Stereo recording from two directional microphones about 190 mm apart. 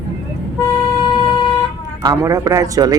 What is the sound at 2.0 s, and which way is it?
Speech, 20° right (ahead or behind).